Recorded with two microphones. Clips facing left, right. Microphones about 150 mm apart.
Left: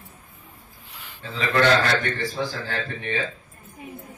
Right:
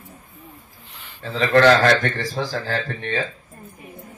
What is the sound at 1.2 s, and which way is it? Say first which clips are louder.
Speech: right 6 dB; 40° right (ahead or behind).